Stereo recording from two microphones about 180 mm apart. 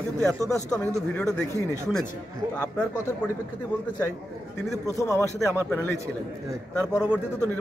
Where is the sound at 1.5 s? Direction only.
15° right (ahead or behind).